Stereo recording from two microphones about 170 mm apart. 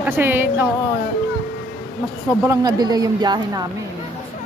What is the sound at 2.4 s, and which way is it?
Speech, 20° right (ahead or behind).